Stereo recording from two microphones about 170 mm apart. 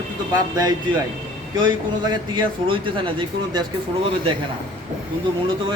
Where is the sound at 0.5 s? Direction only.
20° right (ahead or behind).